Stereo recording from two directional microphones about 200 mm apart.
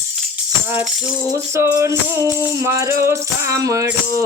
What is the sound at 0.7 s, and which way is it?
Music, 10° right (ahead or behind).